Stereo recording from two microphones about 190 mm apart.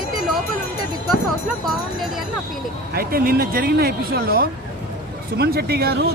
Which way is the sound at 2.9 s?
50° right (ahead or behind).